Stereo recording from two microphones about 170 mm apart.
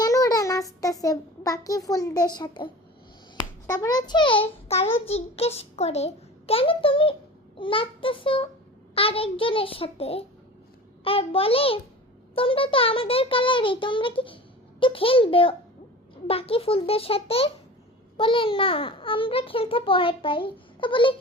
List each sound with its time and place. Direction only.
0.0 s child singing: 20° left (ahead or behind)
1.0 s a child's voice: 20° left (ahead or behind)
3.7 s a child's voice: 20° left (ahead or behind)